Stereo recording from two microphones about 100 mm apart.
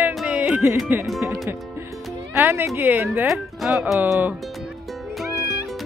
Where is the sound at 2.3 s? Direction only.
25° right (ahead or behind).